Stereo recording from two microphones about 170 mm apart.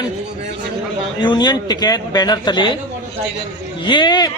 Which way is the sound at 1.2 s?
25° left (ahead or behind).